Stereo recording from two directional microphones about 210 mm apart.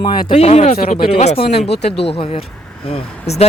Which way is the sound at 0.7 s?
40° left (ahead or behind).